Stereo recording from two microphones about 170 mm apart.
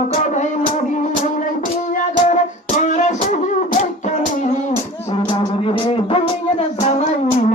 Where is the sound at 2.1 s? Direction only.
45° left (ahead or behind).